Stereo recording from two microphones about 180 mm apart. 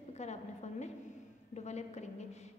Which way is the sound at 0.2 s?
40° left (ahead or behind).